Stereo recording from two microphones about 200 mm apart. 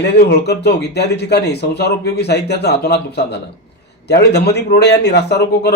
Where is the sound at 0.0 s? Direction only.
55° left (ahead or behind).